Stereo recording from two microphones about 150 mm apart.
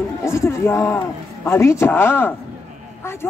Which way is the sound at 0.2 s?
20° left (ahead or behind).